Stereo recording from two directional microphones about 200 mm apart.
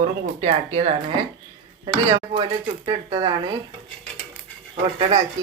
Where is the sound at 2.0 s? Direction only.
30° right (ahead or behind).